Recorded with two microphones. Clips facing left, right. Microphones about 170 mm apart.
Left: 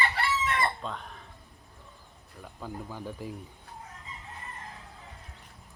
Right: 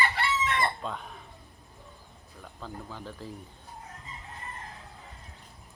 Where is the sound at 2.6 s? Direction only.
10° left (ahead or behind).